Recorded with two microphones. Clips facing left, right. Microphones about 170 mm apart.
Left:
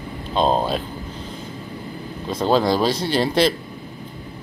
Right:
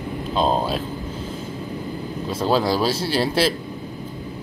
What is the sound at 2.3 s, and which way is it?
Speech, 5° right (ahead or behind).